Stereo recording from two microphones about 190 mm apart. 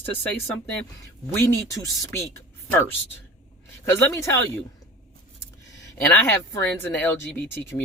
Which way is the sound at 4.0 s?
15° left (ahead or behind).